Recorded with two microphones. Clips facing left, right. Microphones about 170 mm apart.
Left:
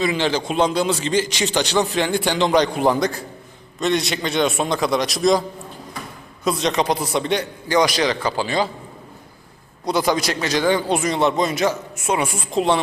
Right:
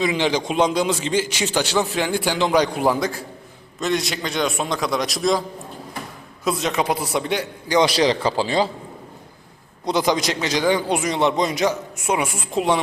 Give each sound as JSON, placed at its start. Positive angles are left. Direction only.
{"t": 0.0, "sound": "a man's voice", "side_deg": -15}
{"t": 6.4, "sound": "a man's voice", "side_deg": -5}
{"t": 7.8, "sound": "a man's voice", "side_deg": -30}
{"t": 9.8, "sound": "a man's voice", "side_deg": -20}